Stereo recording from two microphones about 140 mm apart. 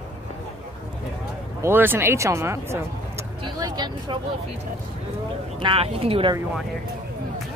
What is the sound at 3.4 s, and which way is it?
Speech, 30° right (ahead or behind).